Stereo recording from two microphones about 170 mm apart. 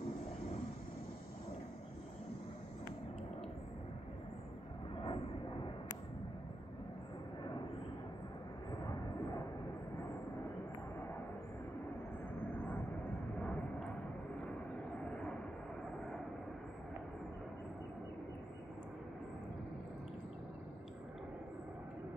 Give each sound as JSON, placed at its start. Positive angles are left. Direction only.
{"t": 5.0, "sound": "vehicle", "side_deg": 30}
{"t": 13.4, "sound": "vehicle", "side_deg": 5}